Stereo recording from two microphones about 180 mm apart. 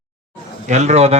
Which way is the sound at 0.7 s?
40° right (ahead or behind).